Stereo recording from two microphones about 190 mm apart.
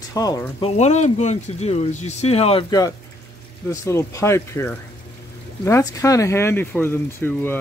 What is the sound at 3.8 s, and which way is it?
Speech, 15° left (ahead or behind).